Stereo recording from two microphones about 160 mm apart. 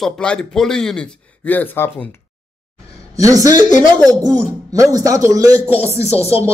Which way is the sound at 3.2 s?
20° right (ahead or behind).